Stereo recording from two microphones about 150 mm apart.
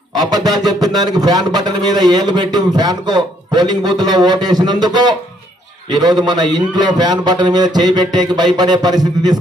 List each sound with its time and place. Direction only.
0.3 s speech: 25° right (ahead or behind)
6.2 s speech: 30° right (ahead or behind)